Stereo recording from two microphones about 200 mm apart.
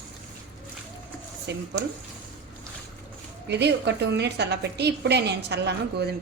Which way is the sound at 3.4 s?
60° right (ahead or behind).